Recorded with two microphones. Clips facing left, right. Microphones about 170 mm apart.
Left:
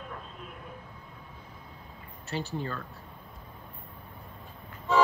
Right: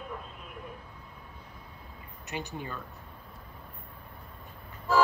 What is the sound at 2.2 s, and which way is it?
Speech, 15° right (ahead or behind).